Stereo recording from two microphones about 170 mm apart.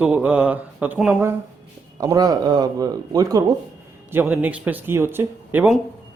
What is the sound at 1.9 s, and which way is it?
Speech, 20° right (ahead or behind).